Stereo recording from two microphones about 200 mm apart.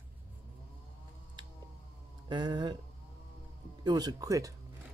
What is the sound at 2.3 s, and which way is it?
Speech, 20° right (ahead or behind).